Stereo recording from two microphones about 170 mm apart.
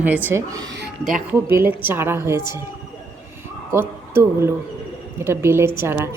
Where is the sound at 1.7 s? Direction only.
10° right (ahead or behind).